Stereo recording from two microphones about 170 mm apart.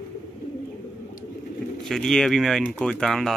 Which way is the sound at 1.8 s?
5° left (ahead or behind).